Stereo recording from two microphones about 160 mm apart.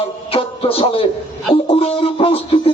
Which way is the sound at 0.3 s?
35° left (ahead or behind).